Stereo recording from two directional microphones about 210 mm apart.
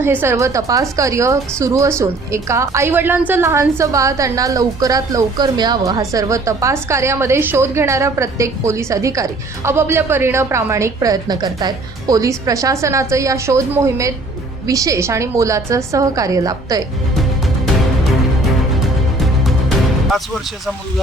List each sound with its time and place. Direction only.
0.0 s a woman's voice: 10° right (ahead or behind)
19.2 s music: centre (ahead or behind)